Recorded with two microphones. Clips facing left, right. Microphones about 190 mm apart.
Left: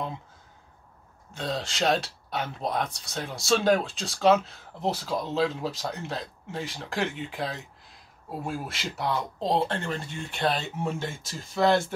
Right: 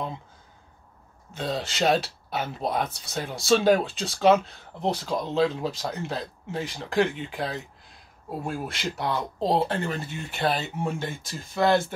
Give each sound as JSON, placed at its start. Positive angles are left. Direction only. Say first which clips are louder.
{"t": 1.3, "sound": "speech", "louder": "right 2 dB", "side_deg": 0}